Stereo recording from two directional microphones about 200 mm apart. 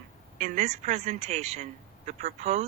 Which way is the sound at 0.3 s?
40° right (ahead or behind).